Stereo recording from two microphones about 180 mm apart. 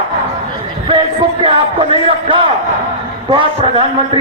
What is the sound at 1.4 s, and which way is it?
A man's voice, 30° right (ahead or behind).